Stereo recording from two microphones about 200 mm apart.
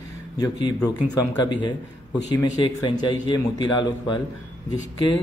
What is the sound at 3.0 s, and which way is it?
A man's voice, 20° left (ahead or behind).